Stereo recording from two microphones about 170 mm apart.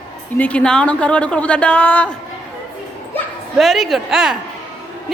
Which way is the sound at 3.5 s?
Centre (ahead or behind).